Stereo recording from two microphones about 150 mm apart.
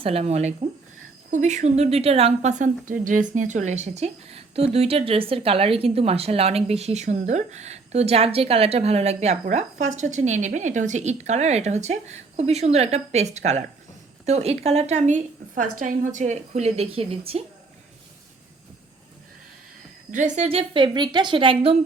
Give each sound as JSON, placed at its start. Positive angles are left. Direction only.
{"t": 0.0, "sound": "speech", "side_deg": -45}
{"t": 20.1, "sound": "speech", "side_deg": -55}